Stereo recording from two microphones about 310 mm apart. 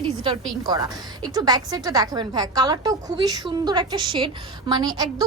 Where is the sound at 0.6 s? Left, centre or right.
Centre.